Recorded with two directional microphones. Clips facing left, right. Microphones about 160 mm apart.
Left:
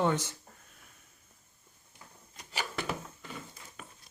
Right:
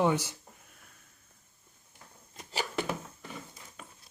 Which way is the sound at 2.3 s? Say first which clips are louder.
Right 3 dB; 35° right (ahead or behind).